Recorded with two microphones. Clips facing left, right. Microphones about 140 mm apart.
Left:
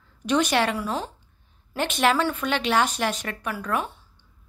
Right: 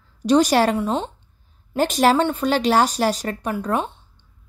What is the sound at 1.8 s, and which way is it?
Speech, 40° right (ahead or behind).